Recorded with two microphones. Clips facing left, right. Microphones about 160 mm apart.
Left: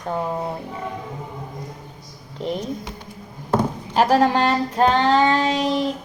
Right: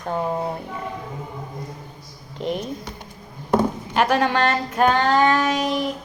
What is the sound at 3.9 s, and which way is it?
Child singing, 35° left (ahead or behind).